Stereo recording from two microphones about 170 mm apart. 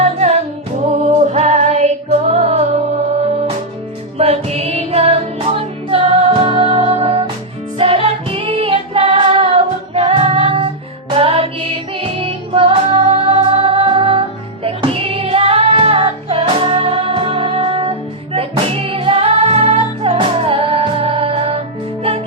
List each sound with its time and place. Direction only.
0.0 s music: 40° right (ahead or behind)
4.2 s music: 35° right (ahead or behind)